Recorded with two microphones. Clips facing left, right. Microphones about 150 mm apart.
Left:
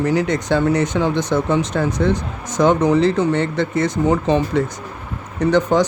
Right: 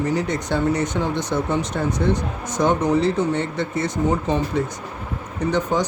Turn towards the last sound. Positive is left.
turn(degrees=90)